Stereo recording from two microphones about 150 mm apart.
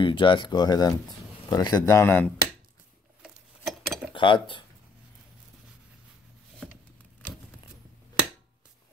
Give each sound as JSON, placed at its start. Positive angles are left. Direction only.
{"t": 0.0, "sound": "speech", "side_deg": 35}
{"t": 3.2, "sound": "a sound", "side_deg": -5}
{"t": 4.1, "sound": "speech", "side_deg": 35}
{"t": 6.7, "sound": "vehicle", "side_deg": -10}